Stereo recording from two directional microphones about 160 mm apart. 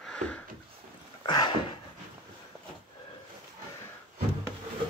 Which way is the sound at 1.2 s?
25° left (ahead or behind).